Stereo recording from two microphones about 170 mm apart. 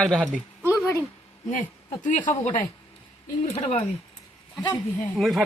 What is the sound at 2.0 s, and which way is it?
Speech, 45° left (ahead or behind).